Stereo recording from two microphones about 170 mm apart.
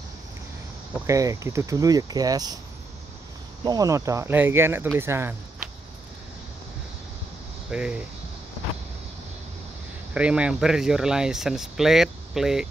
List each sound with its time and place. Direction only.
0.9 s speech: 20° right (ahead or behind)
3.6 s speech: 20° right (ahead or behind)
7.7 s speech: 5° right (ahead or behind)
10.1 s speech: 5° right (ahead or behind)